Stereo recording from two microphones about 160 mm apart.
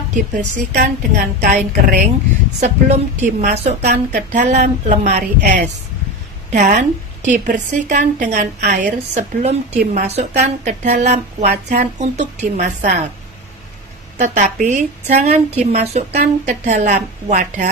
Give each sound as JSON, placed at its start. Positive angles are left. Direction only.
{"t": 0.1, "sound": "a woman's voice", "side_deg": -55}
{"t": 2.6, "sound": "a woman's voice", "side_deg": -45}
{"t": 14.1, "sound": "a woman's voice", "side_deg": -45}